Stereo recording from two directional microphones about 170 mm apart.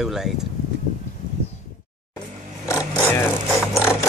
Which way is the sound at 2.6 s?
15° left (ahead or behind).